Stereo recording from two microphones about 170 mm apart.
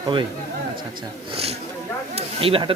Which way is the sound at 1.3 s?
35° right (ahead or behind).